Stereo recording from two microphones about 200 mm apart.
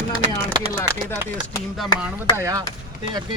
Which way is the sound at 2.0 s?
15° right (ahead or behind).